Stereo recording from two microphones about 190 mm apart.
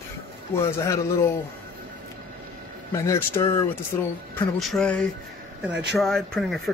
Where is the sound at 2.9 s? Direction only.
15° left (ahead or behind).